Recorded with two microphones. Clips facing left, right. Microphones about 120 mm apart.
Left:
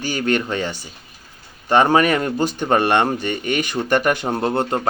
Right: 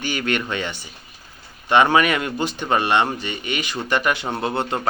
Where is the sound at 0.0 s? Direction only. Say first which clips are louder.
Left 3 dB; 40° left (ahead or behind).